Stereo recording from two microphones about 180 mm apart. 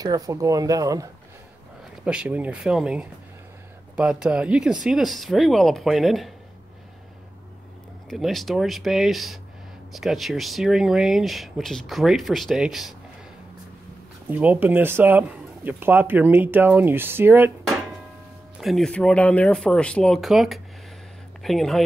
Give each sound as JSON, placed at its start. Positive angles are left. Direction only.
{"t": 0.0, "sound": "speech", "side_deg": -20}
{"t": 2.0, "sound": "speech", "side_deg": -5}
{"t": 8.1, "sound": "speech", "side_deg": 0}
{"t": 14.3, "sound": "speech", "side_deg": -10}
{"t": 18.6, "sound": "speech", "side_deg": 0}